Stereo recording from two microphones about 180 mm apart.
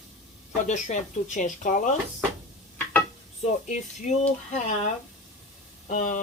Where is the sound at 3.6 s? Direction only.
45° left (ahead or behind).